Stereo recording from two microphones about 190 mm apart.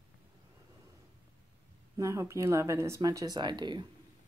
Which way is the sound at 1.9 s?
15° right (ahead or behind).